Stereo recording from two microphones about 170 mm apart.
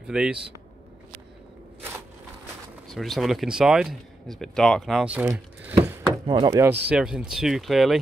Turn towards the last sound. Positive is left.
turn(degrees=0)  # may be behind; listen again after turning